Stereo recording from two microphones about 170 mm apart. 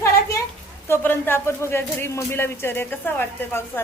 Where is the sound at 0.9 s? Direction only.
15° left (ahead or behind).